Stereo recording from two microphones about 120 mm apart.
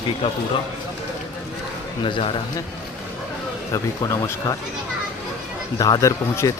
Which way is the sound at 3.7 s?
30° left (ahead or behind).